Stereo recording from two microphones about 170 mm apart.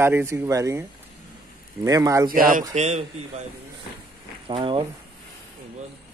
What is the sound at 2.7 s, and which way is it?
Speech, 40° right (ahead or behind).